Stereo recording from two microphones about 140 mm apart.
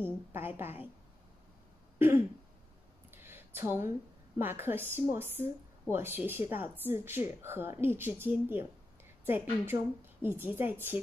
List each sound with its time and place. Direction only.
0.0 s a woman's voice: 15° right (ahead or behind)
2.0 s throat clearing: 15° right (ahead or behind)
3.1 s a sound: 15° right (ahead or behind)
4.4 s speech: 15° right (ahead or behind)